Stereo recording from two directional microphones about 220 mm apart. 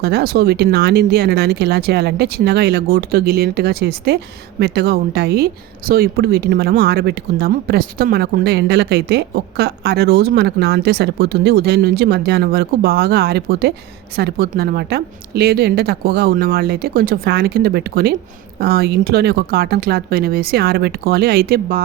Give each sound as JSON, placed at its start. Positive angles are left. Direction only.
{"t": 0.0, "sound": "speech", "side_deg": -45}